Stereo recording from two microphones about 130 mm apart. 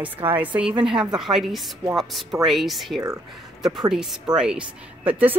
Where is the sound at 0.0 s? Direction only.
15° right (ahead or behind).